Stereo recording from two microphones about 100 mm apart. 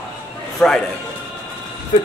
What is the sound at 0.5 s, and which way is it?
Speech, 5° left (ahead or behind).